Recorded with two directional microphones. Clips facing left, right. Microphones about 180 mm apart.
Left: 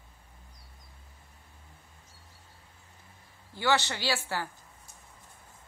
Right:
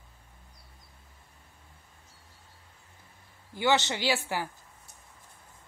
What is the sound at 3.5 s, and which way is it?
Speech, 20° right (ahead or behind).